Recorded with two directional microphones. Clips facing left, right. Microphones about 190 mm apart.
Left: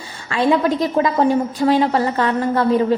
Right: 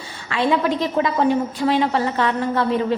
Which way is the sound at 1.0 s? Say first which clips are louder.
Left 2 dB; 40° left (ahead or behind).